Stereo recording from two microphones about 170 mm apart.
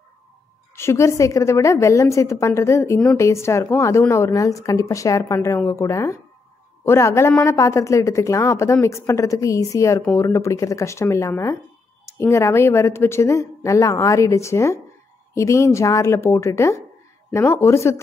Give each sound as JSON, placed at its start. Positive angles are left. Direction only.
{"t": 0.7, "sound": "a woman's voice", "side_deg": 15}